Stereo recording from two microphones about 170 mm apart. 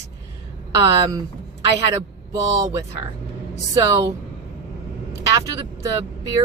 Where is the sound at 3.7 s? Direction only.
20° right (ahead or behind).